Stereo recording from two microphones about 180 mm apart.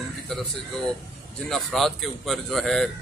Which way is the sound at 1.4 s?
Centre (ahead or behind).